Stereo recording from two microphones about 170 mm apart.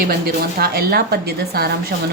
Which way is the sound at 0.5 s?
65° right (ahead or behind).